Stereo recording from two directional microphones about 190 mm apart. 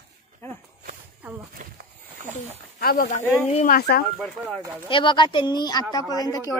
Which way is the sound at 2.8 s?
55° left (ahead or behind).